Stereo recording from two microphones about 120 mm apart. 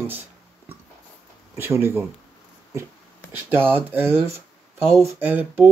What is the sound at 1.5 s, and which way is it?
Speech, 20° right (ahead or behind).